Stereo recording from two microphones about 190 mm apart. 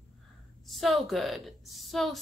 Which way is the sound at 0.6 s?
Centre (ahead or behind).